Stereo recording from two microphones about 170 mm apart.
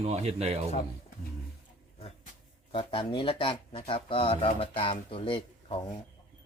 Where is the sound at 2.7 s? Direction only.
30° left (ahead or behind).